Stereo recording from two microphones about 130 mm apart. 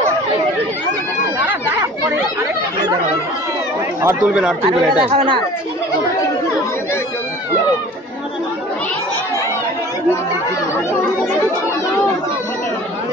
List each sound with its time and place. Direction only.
4.0 s speech: 20° right (ahead or behind)
4.3 s speech: 5° right (ahead or behind)
5.0 s speech: 40° right (ahead or behind)